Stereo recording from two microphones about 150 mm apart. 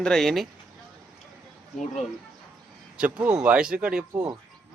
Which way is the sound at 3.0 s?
10° right (ahead or behind).